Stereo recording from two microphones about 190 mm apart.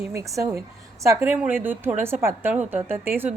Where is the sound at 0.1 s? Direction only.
15° right (ahead or behind).